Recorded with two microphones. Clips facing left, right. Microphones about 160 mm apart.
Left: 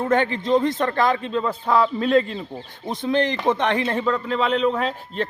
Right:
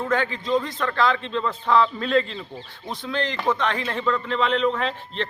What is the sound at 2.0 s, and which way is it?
Speech, 45° left (ahead or behind).